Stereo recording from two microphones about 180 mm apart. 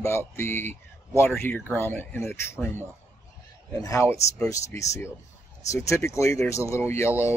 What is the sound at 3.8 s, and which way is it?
Speech, 15° left (ahead or behind).